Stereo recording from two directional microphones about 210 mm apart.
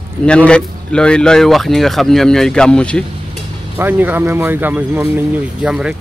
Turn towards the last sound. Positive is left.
turn(degrees=-5)  # may be behind; listen again after turning